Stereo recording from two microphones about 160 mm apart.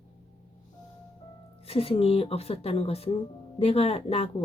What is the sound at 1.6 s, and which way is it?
A woman's voice, 40° left (ahead or behind).